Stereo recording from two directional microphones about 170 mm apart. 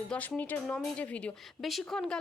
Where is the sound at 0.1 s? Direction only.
10° left (ahead or behind).